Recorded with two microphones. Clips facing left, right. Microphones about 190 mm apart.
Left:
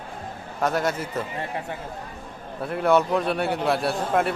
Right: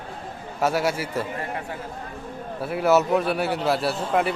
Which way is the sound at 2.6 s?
5° right (ahead or behind).